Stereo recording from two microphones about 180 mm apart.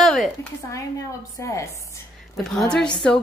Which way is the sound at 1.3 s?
15° left (ahead or behind).